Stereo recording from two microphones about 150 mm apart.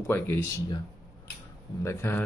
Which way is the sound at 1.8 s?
15° left (ahead or behind).